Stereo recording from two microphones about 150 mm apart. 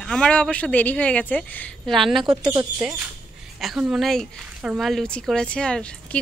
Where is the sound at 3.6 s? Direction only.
5° right (ahead or behind).